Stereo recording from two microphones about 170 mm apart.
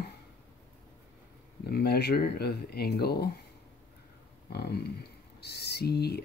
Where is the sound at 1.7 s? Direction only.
70° left (ahead or behind).